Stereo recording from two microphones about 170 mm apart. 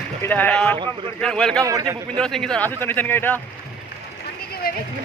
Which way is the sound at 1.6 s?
20° right (ahead or behind).